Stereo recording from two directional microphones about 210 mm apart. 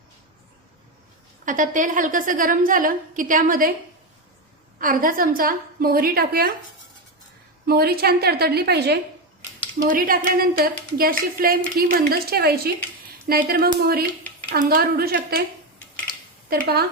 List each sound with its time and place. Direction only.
1.5 s a woman's voice: 40° right (ahead or behind)
4.8 s a woman's voice: 40° right (ahead or behind)
7.7 s a woman's voice: 45° right (ahead or behind)
16.5 s a woman's voice: 50° right (ahead or behind)